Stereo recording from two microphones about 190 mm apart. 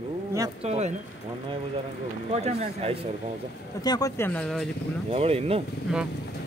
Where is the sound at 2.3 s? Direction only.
35° right (ahead or behind).